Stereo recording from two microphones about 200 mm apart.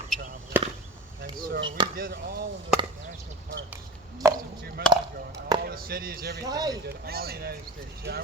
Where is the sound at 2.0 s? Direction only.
45° right (ahead or behind).